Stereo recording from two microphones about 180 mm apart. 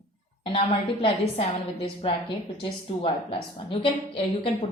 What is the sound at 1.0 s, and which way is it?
A woman's voice, 30° left (ahead or behind).